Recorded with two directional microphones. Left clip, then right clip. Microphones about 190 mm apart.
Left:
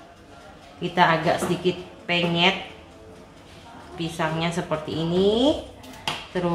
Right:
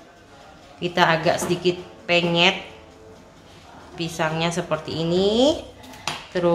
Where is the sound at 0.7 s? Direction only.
25° right (ahead or behind).